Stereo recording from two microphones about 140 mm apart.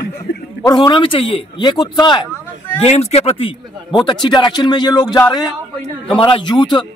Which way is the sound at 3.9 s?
30° left (ahead or behind).